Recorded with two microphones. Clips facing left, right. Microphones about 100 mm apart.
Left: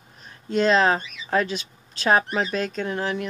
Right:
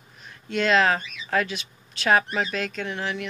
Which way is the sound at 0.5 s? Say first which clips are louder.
Left 2 dB; 35° left (ahead or behind).